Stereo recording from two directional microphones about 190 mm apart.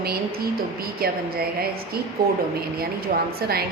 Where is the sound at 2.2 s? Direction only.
50° right (ahead or behind).